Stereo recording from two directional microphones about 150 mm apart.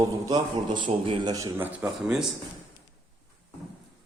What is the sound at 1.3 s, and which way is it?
Speech, 20° right (ahead or behind).